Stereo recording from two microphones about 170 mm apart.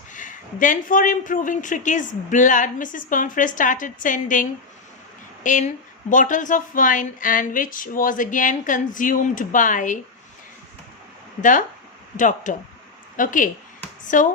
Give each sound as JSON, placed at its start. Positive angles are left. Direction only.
{"t": 0.1, "sound": "speech", "side_deg": 50}
{"t": 12.1, "sound": "speech", "side_deg": 50}